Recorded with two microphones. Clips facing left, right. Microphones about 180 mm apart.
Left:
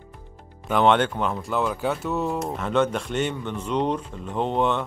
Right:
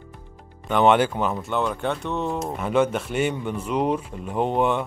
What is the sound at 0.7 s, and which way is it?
Speech, 5° right (ahead or behind).